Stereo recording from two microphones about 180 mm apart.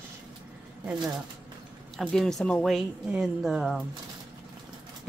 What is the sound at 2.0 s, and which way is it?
A woman's voice, centre (ahead or behind).